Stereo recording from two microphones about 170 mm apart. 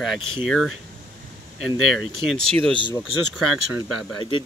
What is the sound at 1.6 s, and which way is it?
Speech, centre (ahead or behind).